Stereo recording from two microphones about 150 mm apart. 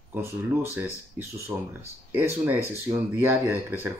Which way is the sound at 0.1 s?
15° right (ahead or behind).